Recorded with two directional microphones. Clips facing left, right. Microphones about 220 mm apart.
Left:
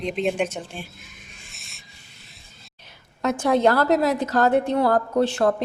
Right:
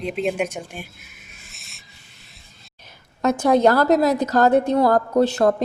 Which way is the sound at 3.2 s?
40° right (ahead or behind).